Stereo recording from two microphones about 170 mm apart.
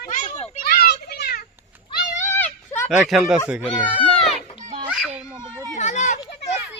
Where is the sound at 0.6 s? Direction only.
65° left (ahead or behind).